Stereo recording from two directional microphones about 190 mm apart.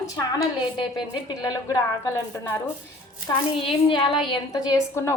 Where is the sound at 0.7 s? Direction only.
25° left (ahead or behind).